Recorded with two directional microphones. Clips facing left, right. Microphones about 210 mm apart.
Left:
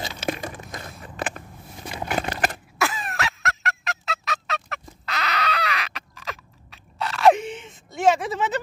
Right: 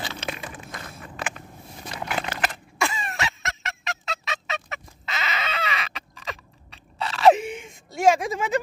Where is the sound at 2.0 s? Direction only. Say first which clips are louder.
Left 3 dB; 50° left (ahead or behind).